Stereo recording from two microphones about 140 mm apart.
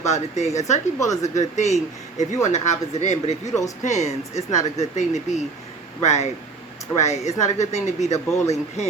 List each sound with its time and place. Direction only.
0.1 s speech: 55° left (ahead or behind)
0.9 s speech: 25° left (ahead or behind)
1.4 s speech: 55° left (ahead or behind)